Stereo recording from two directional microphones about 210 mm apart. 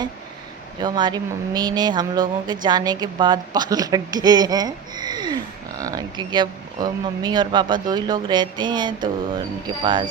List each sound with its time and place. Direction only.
0.8 s a woman's voice: 20° right (ahead or behind)